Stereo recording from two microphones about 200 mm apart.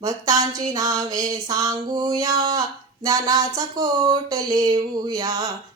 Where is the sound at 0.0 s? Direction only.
20° right (ahead or behind).